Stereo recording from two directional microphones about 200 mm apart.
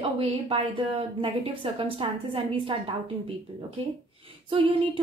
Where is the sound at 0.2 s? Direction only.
25° right (ahead or behind).